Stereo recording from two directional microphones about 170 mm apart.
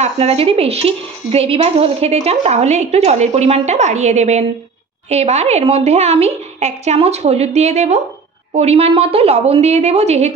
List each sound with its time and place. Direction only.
0.0 s a woman's voice: 35° right (ahead or behind)